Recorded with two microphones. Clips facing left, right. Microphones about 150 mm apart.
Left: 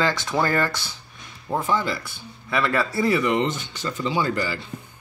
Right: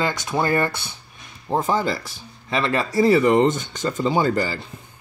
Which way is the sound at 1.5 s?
40° right (ahead or behind).